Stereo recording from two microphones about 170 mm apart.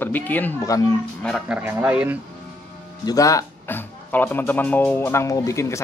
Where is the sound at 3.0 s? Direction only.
20° left (ahead or behind).